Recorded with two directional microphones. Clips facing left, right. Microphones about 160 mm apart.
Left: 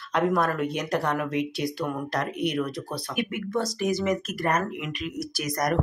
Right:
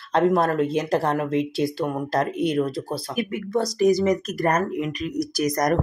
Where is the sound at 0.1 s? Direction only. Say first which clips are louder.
Right 4 dB; 25° right (ahead or behind).